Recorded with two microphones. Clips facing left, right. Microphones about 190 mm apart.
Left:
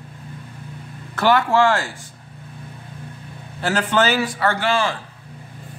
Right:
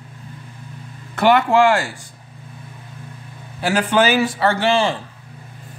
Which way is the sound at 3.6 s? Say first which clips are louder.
Right 2 dB; 15° right (ahead or behind).